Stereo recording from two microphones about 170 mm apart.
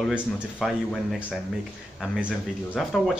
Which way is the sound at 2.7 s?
5° left (ahead or behind).